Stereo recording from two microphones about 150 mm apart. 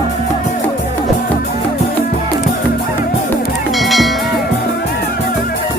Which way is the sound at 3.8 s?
Centre (ahead or behind).